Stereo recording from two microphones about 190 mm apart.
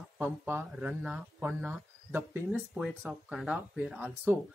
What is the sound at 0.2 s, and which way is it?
Speech, 10° right (ahead or behind).